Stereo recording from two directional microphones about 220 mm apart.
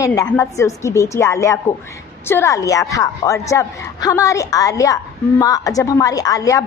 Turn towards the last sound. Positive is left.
turn(degrees=15)  # may be behind; listen again after turning